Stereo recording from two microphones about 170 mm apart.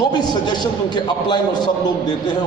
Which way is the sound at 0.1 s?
25° left (ahead or behind).